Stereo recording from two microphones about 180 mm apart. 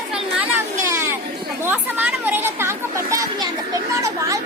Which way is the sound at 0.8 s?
15° right (ahead or behind).